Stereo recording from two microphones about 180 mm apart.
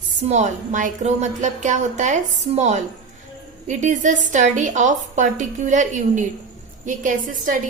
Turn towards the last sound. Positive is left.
turn(degrees=-45)  # may be behind; listen again after turning